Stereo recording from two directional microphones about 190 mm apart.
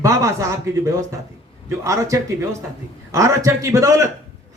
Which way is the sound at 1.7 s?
15° right (ahead or behind).